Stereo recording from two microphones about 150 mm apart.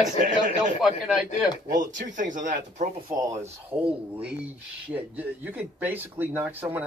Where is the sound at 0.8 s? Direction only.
5° right (ahead or behind).